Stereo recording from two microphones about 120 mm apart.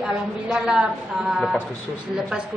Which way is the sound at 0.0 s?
5° right (ahead or behind).